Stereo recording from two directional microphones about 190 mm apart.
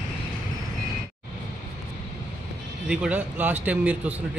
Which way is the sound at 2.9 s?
5° right (ahead or behind).